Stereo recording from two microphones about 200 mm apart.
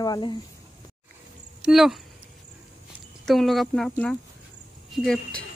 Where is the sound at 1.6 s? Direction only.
Centre (ahead or behind).